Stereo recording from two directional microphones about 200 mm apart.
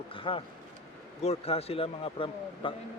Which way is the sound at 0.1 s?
25° left (ahead or behind).